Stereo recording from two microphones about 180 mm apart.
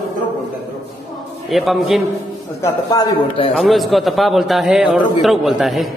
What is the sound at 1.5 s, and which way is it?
Speech, centre (ahead or behind).